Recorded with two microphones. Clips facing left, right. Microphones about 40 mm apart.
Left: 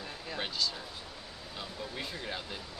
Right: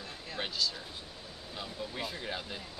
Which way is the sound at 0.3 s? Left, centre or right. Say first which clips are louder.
Even; centre.